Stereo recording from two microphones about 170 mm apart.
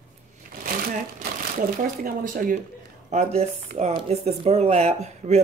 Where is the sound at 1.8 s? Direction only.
55° right (ahead or behind).